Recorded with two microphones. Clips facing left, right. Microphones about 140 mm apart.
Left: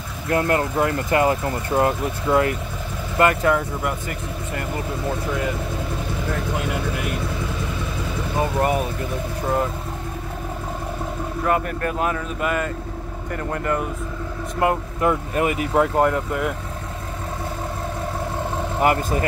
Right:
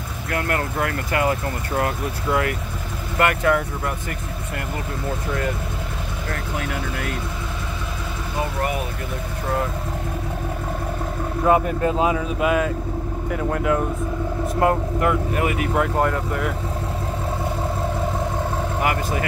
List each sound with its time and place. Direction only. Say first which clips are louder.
0.3 s speech: left 4 dB; 25° left (ahead or behind)
11.4 s speech: right 4 dB; 15° right (ahead or behind)
12.4 s speech: right 4 dB; 5° right (ahead or behind)
15.0 s speech: even; 25° left (ahead or behind)